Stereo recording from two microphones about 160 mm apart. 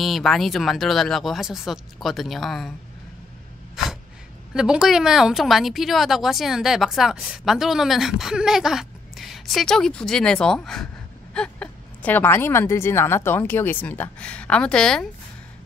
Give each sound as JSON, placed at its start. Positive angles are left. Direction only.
{"t": 0.0, "sound": "speech", "side_deg": 0}
{"t": 4.6, "sound": "a woman's voice", "side_deg": -5}